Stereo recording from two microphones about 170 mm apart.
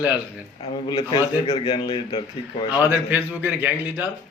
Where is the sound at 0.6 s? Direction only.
25° left (ahead or behind).